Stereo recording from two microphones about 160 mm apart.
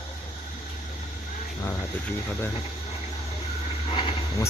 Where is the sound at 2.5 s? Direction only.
40° left (ahead or behind).